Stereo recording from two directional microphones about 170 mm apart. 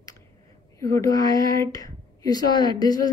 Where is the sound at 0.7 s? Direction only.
15° left (ahead or behind).